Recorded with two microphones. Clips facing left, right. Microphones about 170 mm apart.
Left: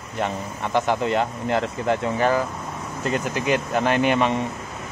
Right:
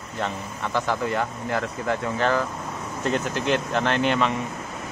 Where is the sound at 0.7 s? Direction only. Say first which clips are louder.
Left 4 dB; 20° left (ahead or behind).